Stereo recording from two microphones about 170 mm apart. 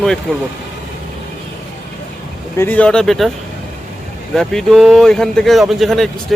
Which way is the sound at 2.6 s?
10° left (ahead or behind).